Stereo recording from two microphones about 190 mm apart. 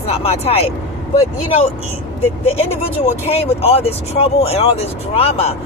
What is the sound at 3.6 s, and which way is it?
Speech, 30° left (ahead or behind).